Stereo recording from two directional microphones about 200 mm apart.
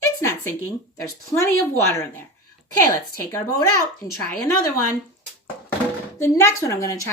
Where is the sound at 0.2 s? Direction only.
15° left (ahead or behind).